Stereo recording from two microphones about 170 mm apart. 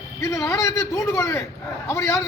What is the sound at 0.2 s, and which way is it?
A man's voice, 15° left (ahead or behind).